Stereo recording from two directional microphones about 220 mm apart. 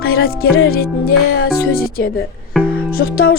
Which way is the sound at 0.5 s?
45° left (ahead or behind).